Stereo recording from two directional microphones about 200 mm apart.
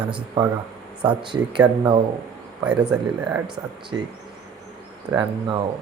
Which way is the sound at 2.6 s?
5° right (ahead or behind).